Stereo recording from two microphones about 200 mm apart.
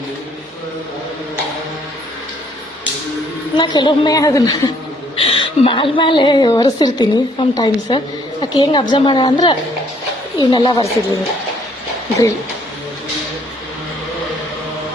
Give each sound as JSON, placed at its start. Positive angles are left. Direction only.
{"t": 3.6, "sound": "a woman's voice", "side_deg": 20}